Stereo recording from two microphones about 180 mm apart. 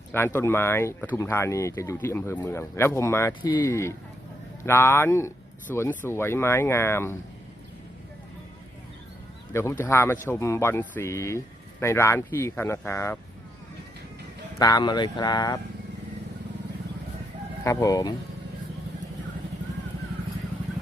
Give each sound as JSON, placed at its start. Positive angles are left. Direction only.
{"t": 0.3, "sound": "speech", "side_deg": 15}
{"t": 9.5, "sound": "speech", "side_deg": 15}
{"t": 14.6, "sound": "speech", "side_deg": 25}
{"t": 17.6, "sound": "speech", "side_deg": 15}